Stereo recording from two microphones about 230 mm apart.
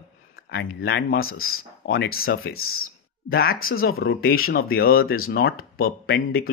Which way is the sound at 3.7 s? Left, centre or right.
Left.